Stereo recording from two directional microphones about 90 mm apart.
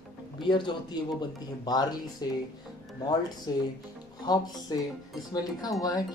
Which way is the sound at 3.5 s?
45° left (ahead or behind).